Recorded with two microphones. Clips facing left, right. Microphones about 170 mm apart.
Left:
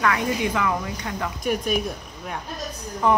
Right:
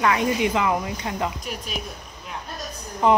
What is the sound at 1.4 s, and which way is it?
Speech, 55° left (ahead or behind).